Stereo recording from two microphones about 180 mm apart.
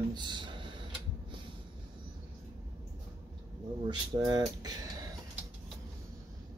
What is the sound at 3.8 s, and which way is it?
Speech, 20° right (ahead or behind).